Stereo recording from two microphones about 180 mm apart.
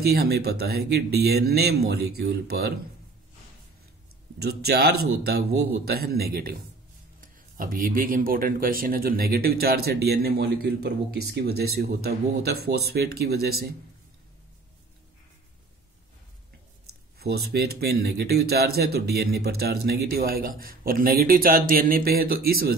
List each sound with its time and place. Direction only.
0.0 s speech: 60° right (ahead or behind)
4.4 s speech: 65° right (ahead or behind)
17.5 s speech: 60° right (ahead or behind)